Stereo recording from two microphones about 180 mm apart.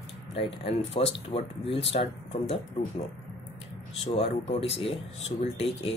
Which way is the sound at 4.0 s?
35° left (ahead or behind).